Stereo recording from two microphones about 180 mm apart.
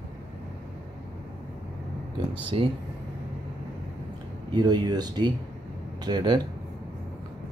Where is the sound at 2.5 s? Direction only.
30° right (ahead or behind).